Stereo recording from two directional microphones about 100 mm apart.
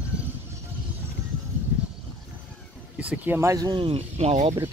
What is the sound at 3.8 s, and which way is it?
Speech, 70° right (ahead or behind).